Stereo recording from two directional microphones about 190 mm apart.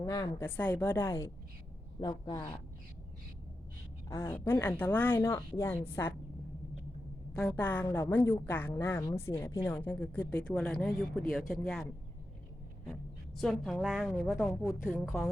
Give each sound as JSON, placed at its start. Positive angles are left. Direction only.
{"t": 0.0, "sound": "a woman's voice", "side_deg": 20}
{"t": 4.1, "sound": "a woman's voice", "side_deg": 15}
{"t": 7.3, "sound": "a woman's voice", "side_deg": 5}
{"t": 12.9, "sound": "a woman's voice", "side_deg": 0}